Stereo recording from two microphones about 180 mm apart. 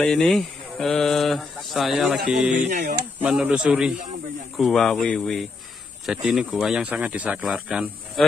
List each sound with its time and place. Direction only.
0.0 s speech: 5° left (ahead or behind)
2.7 s speech: 60° right (ahead or behind)
3.2 s speech: 5° right (ahead or behind)